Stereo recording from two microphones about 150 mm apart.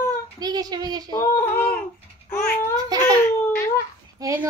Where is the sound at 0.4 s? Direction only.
25° right (ahead or behind).